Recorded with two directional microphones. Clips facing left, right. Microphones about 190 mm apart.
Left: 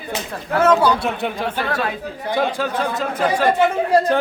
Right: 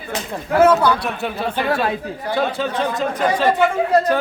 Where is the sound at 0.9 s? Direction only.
20° left (ahead or behind).